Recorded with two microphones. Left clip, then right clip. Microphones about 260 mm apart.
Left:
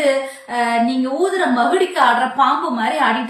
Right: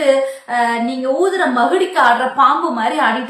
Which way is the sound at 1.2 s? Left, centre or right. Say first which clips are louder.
Right 1 dB; centre.